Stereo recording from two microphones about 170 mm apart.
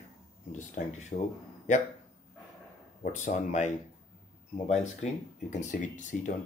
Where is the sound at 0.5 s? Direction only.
45° left (ahead or behind).